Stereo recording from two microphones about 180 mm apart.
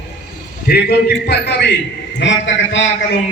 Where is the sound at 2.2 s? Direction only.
85° left.